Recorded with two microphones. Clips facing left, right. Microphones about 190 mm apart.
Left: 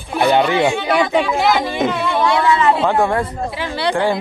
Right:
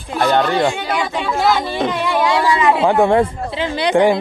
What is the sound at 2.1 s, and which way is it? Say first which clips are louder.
Speech: even; 15° right (ahead or behind).